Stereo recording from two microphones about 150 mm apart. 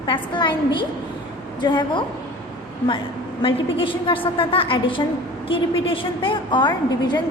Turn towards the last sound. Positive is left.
turn(degrees=30)  # may be behind; listen again after turning